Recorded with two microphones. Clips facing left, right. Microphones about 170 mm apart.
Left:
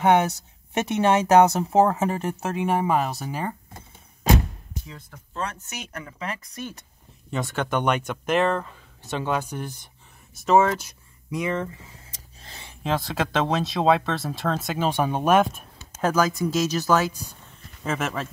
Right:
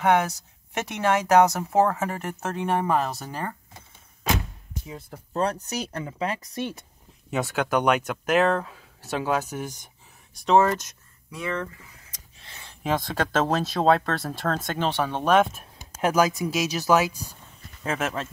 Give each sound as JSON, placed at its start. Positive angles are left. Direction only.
{"t": 0.0, "sound": "speech", "side_deg": 25}
{"t": 4.8, "sound": "speech", "side_deg": -30}
{"t": 7.2, "sound": "speech", "side_deg": -5}
{"t": 11.2, "sound": "speech", "side_deg": 20}
{"t": 12.8, "sound": "speech", "side_deg": 0}
{"t": 15.8, "sound": "speech", "side_deg": -15}
{"t": 18.0, "sound": "speech", "side_deg": 5}